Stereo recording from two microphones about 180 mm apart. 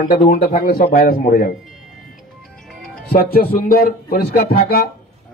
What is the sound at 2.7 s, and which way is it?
Music, centre (ahead or behind).